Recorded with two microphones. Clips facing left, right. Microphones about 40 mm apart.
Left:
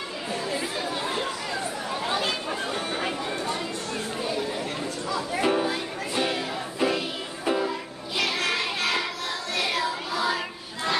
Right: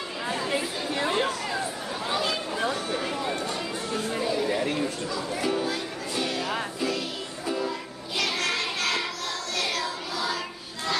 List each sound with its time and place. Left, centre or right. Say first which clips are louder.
0.9 s chatter: right 7 dB; right
2.7 s a sound: even; left
5.1 s music: left 7 dB; left
5.6 s music: left 2 dB; left
8.2 s child singing: left 1 dB; centre
9.6 s music: left 3 dB; centre